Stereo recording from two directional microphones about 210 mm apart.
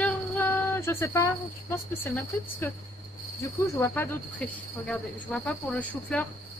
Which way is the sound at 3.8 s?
10° left (ahead or behind).